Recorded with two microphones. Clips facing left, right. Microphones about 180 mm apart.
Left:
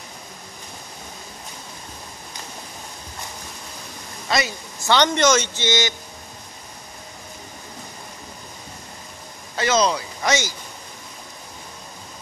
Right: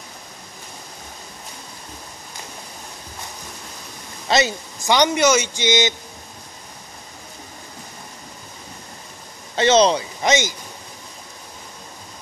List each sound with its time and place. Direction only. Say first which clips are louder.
4.3 s speech: right 4 dB; 25° right (ahead or behind)
4.8 s speech: right 1 dB; 10° right (ahead or behind)
9.6 s speech: right 5 dB; 25° right (ahead or behind)